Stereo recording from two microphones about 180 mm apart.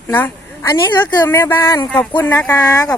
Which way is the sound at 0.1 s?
15° left (ahead or behind).